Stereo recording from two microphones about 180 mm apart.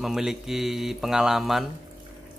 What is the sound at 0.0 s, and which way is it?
Speech, centre (ahead or behind).